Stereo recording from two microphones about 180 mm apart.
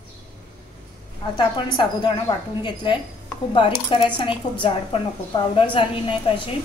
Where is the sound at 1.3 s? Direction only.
25° left (ahead or behind).